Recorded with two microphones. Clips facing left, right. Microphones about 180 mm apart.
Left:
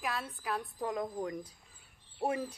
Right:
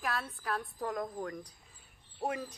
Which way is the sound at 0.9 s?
10° left (ahead or behind).